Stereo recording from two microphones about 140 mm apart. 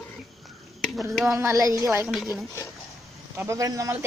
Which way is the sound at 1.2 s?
20° right (ahead or behind).